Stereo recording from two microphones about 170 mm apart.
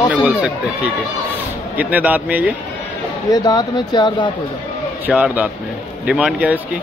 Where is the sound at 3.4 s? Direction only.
25° left (ahead or behind).